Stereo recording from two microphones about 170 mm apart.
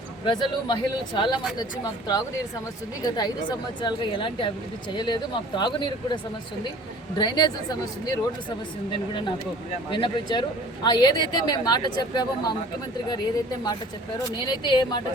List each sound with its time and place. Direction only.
0.3 s speech: 25° left (ahead or behind)
7.2 s speech: 25° left (ahead or behind)
9.9 s speech: 30° left (ahead or behind)
14.3 s speech: 25° left (ahead or behind)